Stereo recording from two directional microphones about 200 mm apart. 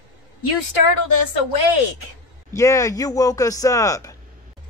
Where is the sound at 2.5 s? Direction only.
15° left (ahead or behind).